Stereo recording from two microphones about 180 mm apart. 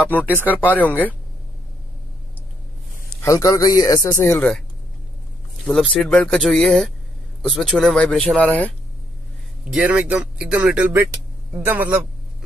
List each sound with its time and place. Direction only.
0.0 s speech: 10° left (ahead or behind)
3.2 s speech: 20° left (ahead or behind)
5.7 s speech: 5° left (ahead or behind)
9.7 s speech: 5° right (ahead or behind)